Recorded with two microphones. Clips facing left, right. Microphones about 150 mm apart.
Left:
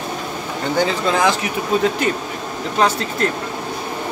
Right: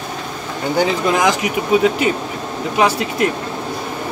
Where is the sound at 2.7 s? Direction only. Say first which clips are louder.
Right 2 dB; 10° right (ahead or behind).